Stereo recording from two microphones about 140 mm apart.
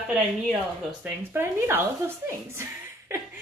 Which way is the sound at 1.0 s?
15° right (ahead or behind).